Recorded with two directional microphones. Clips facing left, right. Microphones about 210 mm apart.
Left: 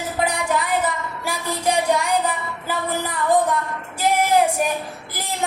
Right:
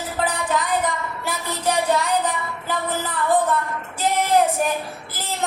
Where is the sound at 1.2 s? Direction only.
10° left (ahead or behind).